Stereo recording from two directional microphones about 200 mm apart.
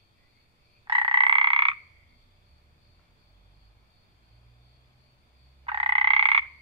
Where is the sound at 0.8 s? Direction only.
25° right (ahead or behind).